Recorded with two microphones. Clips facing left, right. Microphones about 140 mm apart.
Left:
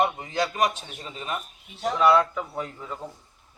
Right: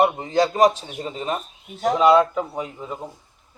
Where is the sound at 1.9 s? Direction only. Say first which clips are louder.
Right 4 dB; 20° right (ahead or behind).